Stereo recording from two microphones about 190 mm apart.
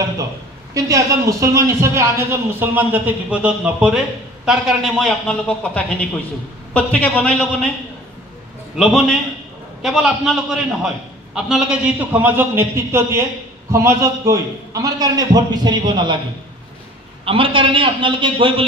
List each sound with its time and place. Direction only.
0.7 s a man's voice: 15° right (ahead or behind); by 7.7 s 5° left (ahead or behind)
8.7 s a man's voice: centre (ahead or behind); by 16.2 s 25° right (ahead or behind)
17.2 s a man's voice: 30° right (ahead or behind)